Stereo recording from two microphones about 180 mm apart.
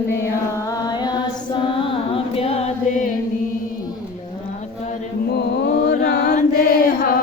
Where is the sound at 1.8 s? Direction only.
30° left (ahead or behind).